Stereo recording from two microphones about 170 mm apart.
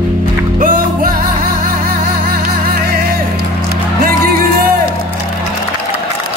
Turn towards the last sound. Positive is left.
turn(degrees=-60)  # may be behind; listen again after turning